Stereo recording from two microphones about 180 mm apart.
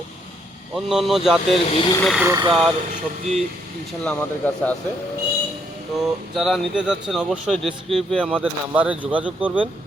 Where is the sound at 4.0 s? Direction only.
5° left (ahead or behind).